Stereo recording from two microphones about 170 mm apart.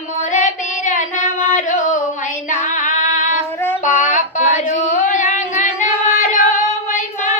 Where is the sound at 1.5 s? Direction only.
45° left (ahead or behind).